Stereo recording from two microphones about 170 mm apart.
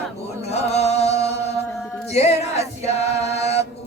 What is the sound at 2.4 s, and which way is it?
Choir, 40° left (ahead or behind).